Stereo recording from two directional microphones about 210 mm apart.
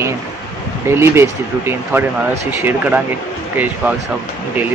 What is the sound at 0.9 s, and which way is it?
Speech, 10° right (ahead or behind).